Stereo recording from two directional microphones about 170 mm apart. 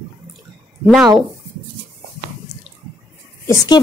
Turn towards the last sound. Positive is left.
turn(degrees=20)  # may be behind; listen again after turning